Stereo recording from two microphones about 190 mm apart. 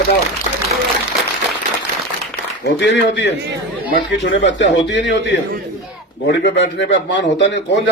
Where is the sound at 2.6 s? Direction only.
65° left (ahead or behind).